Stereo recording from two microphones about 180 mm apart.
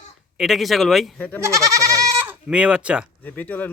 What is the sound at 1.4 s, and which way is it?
Goat, 15° right (ahead or behind).